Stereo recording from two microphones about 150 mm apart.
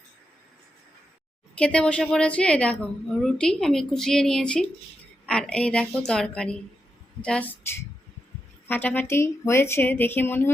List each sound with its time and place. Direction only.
1.5 s a woman's voice: 5° left (ahead or behind)